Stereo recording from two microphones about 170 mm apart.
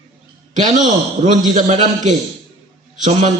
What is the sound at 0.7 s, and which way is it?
A man's voice, 45° right (ahead or behind).